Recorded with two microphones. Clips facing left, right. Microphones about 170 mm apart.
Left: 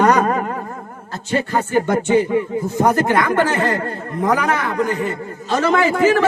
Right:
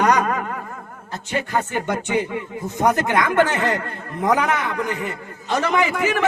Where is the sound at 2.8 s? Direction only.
20° right (ahead or behind).